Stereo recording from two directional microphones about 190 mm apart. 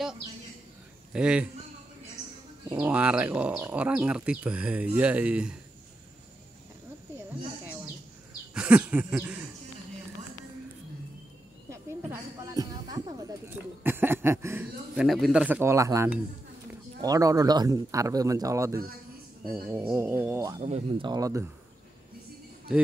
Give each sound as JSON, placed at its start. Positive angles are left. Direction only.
{"t": 1.1, "sound": "a man's voice", "side_deg": -5}
{"t": 2.2, "sound": "a sound", "side_deg": 15}
{"t": 2.8, "sound": "speech", "side_deg": -5}
{"t": 7.6, "sound": "bird", "side_deg": -10}
{"t": 8.5, "sound": "speech", "side_deg": -5}
{"t": 11.7, "sound": "a sound", "side_deg": -15}
{"t": 13.8, "sound": "speech", "side_deg": -10}
{"t": 15.0, "sound": "speech", "side_deg": 0}
{"t": 20.6, "sound": "speech", "side_deg": -35}
{"t": 21.1, "sound": "speech", "side_deg": -15}